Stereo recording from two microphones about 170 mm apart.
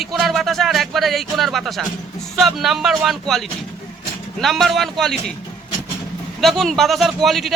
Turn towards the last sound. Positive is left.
turn(degrees=0)  # may be behind; listen again after turning